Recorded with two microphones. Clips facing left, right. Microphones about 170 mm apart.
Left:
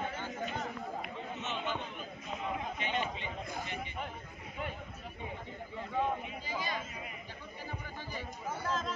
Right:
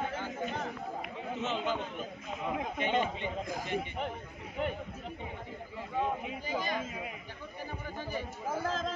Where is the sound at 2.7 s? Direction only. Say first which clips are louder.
Right 5 dB; 50° right (ahead or behind).